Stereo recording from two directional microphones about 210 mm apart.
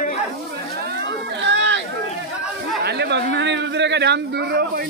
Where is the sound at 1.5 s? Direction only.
60° right (ahead or behind).